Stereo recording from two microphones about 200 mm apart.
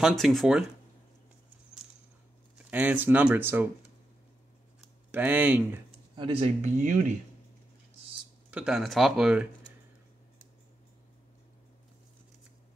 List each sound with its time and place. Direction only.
0.0 s speech: centre (ahead or behind)
2.7 s speech: 10° right (ahead or behind)
5.1 s speech: 10° right (ahead or behind)
6.1 s speech: 25° right (ahead or behind)
6.6 s speech: 40° right (ahead or behind)
8.5 s speech: 5° right (ahead or behind)